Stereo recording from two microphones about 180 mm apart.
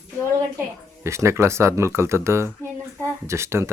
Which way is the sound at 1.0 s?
15° right (ahead or behind).